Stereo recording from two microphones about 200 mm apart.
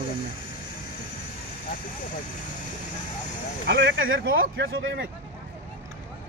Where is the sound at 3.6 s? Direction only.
60° right (ahead or behind).